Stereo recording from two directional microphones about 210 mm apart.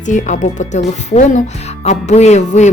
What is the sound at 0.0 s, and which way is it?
Speech, 35° left (ahead or behind).